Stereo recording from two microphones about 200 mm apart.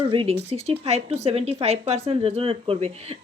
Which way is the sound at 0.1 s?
30° right (ahead or behind).